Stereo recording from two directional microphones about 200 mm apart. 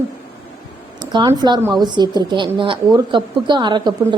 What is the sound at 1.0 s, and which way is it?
Speech, 20° right (ahead or behind).